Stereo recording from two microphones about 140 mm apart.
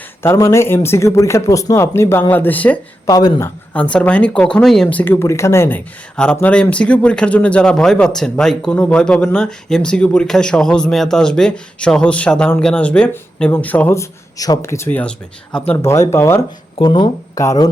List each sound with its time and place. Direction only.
0.2 s speech: 20° left (ahead or behind)
3.1 s speech: 25° left (ahead or behind)
3.8 s speech: 10° left (ahead or behind)
16.7 s speech: 35° left (ahead or behind)